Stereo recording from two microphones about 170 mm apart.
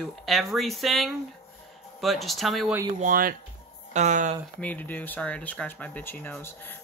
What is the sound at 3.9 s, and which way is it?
Speech, 45° right (ahead or behind).